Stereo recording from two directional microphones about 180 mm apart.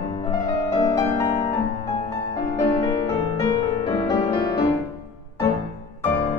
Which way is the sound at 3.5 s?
25° left (ahead or behind).